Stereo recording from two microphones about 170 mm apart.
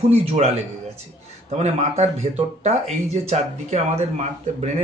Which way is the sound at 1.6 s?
40° right (ahead or behind).